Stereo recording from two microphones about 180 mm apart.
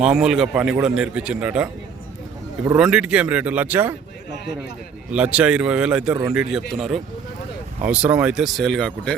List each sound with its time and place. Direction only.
0.0 s a man's voice: 5° right (ahead or behind)
2.7 s speech: 5° right (ahead or behind)
5.1 s a man's voice: 5° right (ahead or behind)